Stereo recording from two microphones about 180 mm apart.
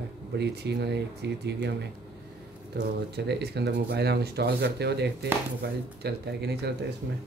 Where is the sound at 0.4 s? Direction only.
70° right (ahead or behind).